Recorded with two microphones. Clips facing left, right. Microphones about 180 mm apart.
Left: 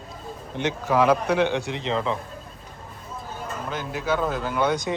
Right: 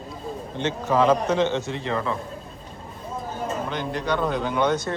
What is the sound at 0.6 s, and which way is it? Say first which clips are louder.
Speech: even; 10° left (ahead or behind).